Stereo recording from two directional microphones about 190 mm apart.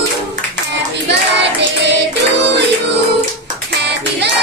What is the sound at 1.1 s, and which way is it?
Hands, 65° right (ahead or behind).